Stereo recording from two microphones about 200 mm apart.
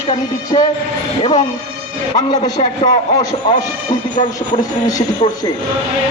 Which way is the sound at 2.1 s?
20° left (ahead or behind).